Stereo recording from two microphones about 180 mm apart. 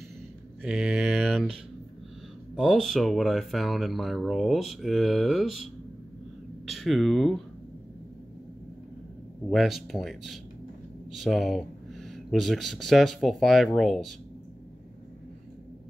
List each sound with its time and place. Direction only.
0.6 s mantra: 5° right (ahead or behind)
2.5 s speech: centre (ahead or behind)
9.5 s speech: centre (ahead or behind)